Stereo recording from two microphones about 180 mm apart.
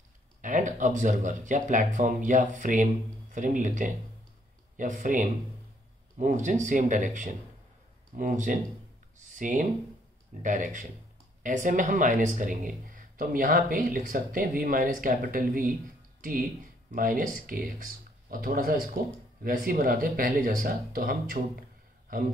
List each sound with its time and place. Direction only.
0.4 s speech: 45° right (ahead or behind)